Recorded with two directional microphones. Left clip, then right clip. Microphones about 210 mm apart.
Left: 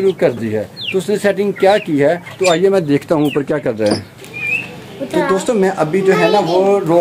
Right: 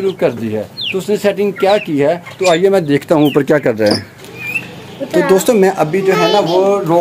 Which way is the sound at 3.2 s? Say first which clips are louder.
Right 5 dB; 45° right (ahead or behind).